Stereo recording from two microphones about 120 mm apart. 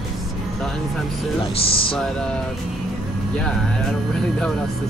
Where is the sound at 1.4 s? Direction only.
50° left (ahead or behind).